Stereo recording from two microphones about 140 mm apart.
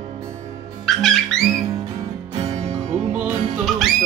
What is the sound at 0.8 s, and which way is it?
Music, centre (ahead or behind).